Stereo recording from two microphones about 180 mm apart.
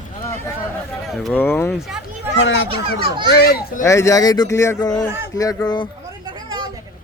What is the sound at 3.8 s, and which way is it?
Speech, 15° left (ahead or behind).